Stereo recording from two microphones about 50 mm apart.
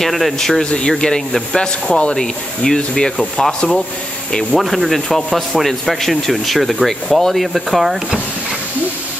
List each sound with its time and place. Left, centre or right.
0.0 s speech: centre
0.7 s speech: centre
4.6 s speech: centre